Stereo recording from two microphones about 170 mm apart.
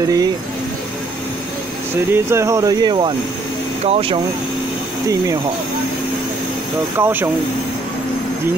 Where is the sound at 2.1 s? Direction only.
15° right (ahead or behind); by 4.2 s 35° right (ahead or behind).